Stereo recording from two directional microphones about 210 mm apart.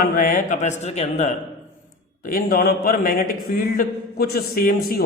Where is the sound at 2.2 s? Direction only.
45° left (ahead or behind).